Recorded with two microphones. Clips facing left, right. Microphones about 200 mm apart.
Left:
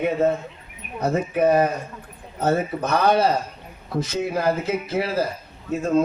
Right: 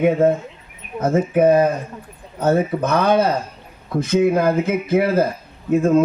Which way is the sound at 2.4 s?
55° right (ahead or behind).